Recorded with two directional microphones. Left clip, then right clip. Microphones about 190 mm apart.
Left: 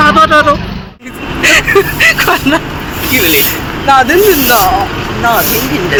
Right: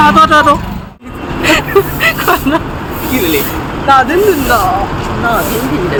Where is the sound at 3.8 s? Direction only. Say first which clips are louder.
Left 2 dB; 25° left (ahead or behind).